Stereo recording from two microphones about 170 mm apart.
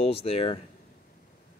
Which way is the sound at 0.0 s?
35° left (ahead or behind).